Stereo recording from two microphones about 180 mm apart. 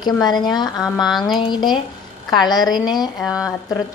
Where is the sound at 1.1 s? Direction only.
Centre (ahead or behind).